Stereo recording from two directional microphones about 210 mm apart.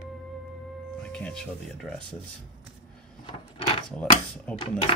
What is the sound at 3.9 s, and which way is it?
Speech, 5° left (ahead or behind).